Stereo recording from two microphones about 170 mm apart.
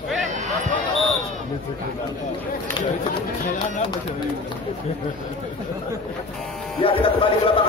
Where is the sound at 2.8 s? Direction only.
25° left (ahead or behind).